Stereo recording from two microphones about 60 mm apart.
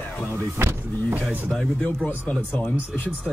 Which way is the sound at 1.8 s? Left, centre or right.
Left.